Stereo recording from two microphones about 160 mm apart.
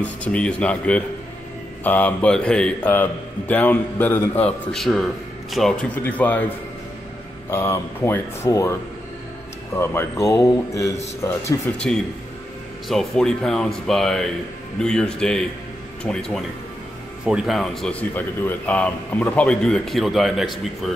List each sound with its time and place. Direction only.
0.2 s a man's voice: 10° left (ahead or behind)
7.5 s a man's voice: 15° left (ahead or behind)
9.8 s a man's voice: 15° left (ahead or behind)
11.6 s a man's voice: 5° left (ahead or behind)